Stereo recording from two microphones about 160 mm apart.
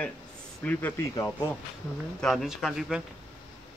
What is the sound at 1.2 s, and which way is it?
Speech, 25° left (ahead or behind).